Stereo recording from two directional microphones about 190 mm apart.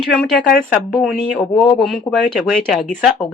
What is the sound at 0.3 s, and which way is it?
Speech, centre (ahead or behind).